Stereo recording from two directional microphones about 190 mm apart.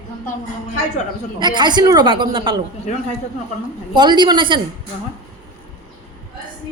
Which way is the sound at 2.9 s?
40° left (ahead or behind).